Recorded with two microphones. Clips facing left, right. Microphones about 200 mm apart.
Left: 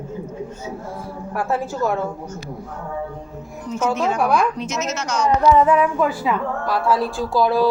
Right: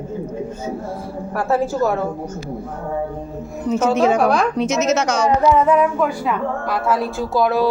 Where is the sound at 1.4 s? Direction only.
40° right (ahead or behind).